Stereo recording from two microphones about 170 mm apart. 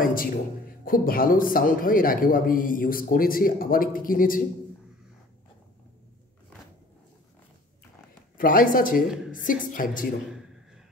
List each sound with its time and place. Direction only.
0.0 s a man's voice: 55° left (ahead or behind)
8.4 s a woman's voice: 55° left (ahead or behind)